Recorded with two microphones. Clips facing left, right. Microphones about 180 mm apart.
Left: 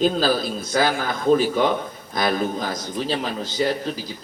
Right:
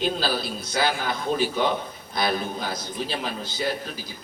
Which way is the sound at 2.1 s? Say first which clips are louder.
Left 4 dB; 45° left (ahead or behind).